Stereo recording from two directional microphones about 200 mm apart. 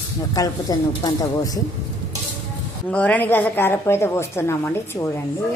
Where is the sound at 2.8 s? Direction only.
5° left (ahead or behind).